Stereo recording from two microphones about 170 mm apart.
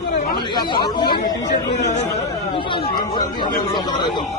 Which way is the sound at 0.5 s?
25° left (ahead or behind).